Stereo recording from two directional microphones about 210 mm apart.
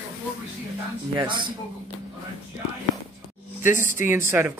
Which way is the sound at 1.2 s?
25° right (ahead or behind).